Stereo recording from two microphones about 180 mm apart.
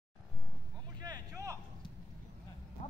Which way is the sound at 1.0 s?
20° right (ahead or behind).